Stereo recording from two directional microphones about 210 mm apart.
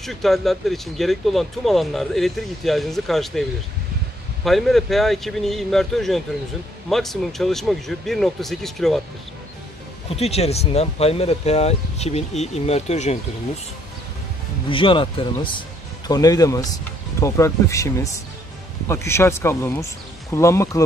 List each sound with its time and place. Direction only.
0.0 s speech: centre (ahead or behind)
4.5 s speech: centre (ahead or behind)
10.0 s speech: 30° left (ahead or behind)
14.7 s speech: 25° left (ahead or behind)